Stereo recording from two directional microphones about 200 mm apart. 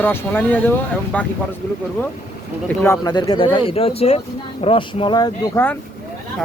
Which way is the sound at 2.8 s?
15° left (ahead or behind).